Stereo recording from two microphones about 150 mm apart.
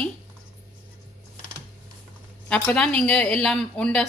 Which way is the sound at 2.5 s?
10° left (ahead or behind).